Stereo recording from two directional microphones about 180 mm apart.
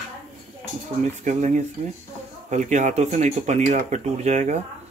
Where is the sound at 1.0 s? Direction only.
40° right (ahead or behind).